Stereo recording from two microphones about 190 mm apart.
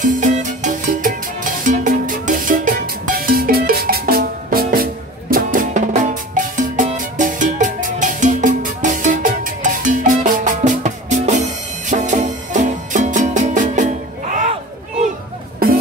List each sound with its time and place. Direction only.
0.0 s music: 40° right (ahead or behind)
15.6 s music: 50° right (ahead or behind)